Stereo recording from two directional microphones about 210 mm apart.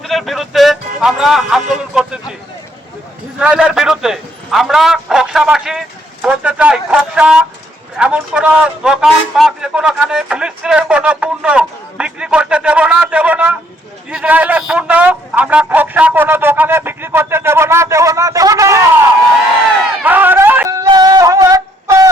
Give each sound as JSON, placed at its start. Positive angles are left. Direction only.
{"t": 0.0, "sound": "speech", "side_deg": 0}
{"t": 3.4, "sound": "a man's voice", "side_deg": -5}
{"t": 20.0, "sound": "a sound", "side_deg": -10}